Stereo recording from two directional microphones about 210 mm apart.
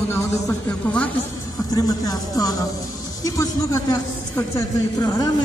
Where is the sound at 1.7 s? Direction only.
15° left (ahead or behind).